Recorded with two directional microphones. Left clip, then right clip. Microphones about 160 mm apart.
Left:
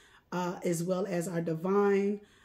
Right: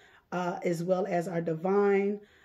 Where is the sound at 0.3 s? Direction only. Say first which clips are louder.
Right 2 dB; 30° left (ahead or behind).